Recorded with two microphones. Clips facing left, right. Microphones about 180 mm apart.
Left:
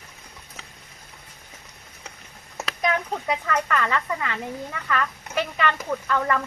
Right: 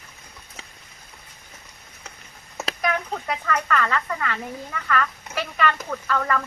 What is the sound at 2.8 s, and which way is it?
Speech, 20° left (ahead or behind).